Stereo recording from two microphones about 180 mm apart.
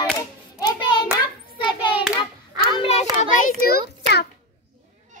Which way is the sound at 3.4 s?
55° left (ahead or behind).